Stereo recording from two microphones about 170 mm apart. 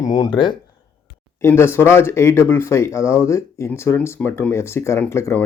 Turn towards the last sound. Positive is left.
turn(degrees=15)  # may be behind; listen again after turning